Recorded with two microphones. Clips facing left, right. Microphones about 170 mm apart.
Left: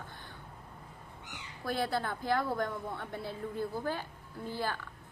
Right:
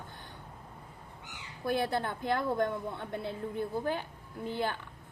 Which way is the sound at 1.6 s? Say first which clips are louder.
Right 2 dB; 15° right (ahead or behind).